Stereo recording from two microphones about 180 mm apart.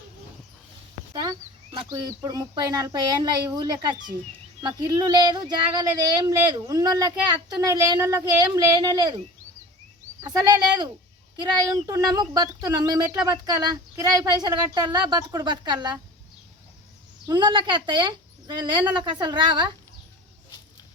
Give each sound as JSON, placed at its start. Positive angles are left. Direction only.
{"t": 1.1, "sound": "speech", "side_deg": -20}
{"t": 11.9, "sound": "speech", "side_deg": -20}
{"t": 17.2, "sound": "speech", "side_deg": -25}